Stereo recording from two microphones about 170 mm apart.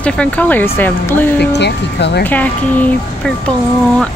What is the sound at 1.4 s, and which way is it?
Speech, 85° left.